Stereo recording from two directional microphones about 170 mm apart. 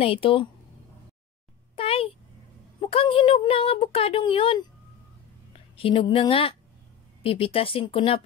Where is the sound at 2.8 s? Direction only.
30° left (ahead or behind).